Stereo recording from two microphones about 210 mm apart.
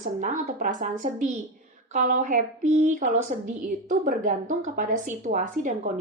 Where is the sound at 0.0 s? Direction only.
40° right (ahead or behind).